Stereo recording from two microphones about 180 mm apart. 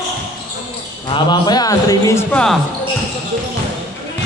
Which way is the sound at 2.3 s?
5° left (ahead or behind).